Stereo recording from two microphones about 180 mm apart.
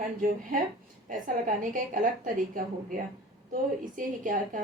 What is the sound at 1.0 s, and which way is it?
A woman's voice, 45° right (ahead or behind).